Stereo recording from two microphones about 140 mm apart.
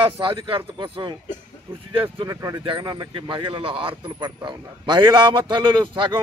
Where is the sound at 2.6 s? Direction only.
35° right (ahead or behind).